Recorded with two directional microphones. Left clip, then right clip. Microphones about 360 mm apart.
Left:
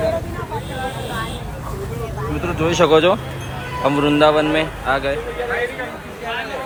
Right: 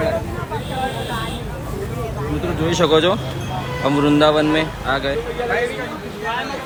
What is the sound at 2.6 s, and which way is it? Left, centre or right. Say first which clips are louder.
A man's voice: left 2 dB; centre.